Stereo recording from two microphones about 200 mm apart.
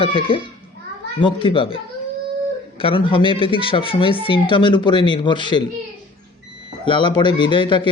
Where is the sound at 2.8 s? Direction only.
25° left (ahead or behind).